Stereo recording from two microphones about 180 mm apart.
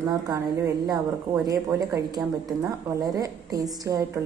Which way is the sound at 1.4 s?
20° right (ahead or behind).